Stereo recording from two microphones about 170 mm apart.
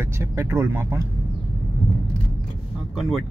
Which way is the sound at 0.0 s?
15° right (ahead or behind).